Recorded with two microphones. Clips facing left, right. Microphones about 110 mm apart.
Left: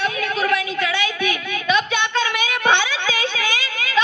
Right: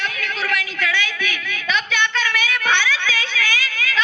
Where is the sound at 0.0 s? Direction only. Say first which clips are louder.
Left 5 dB; 20° left (ahead or behind).